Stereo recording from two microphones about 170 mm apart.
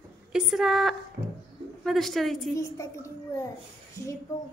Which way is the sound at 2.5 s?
15° left (ahead or behind).